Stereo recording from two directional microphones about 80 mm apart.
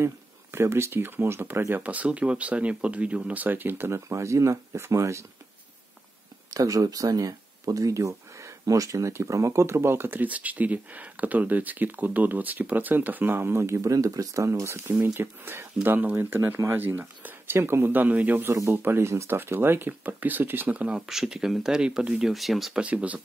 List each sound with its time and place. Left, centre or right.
0.0 s speech: right
1.8 s speech: centre; by 5.2 s right
6.5 s speech: right; by 21.0 s centre
21.1 s speech: centre
22.8 s speech: centre